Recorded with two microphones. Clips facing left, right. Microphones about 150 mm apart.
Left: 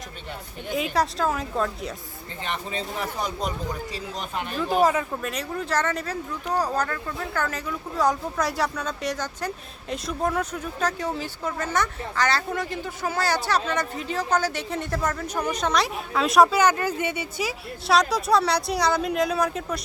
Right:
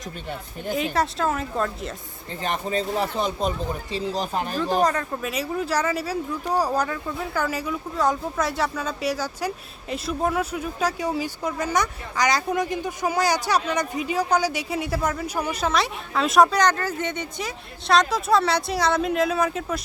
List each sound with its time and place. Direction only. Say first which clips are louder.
0.7 s speech: right 1 dB; centre (ahead or behind)
2.4 s speech: right 5 dB; 40° right (ahead or behind)
3.2 s speech: right 4 dB; 25° right (ahead or behind)
4.5 s speech: left 2 dB; 5° left (ahead or behind)
5.3 s speech: right 3 dB; 5° right (ahead or behind)